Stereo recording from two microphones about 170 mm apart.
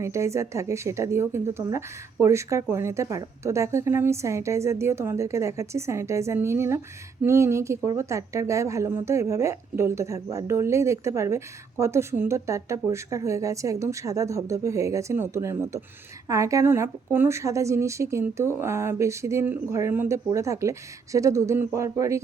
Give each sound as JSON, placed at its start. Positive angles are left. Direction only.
{"t": 0.0, "sound": "a woman's voice", "side_deg": -15}